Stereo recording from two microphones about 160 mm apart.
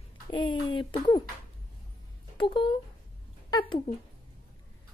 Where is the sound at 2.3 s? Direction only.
30° left (ahead or behind).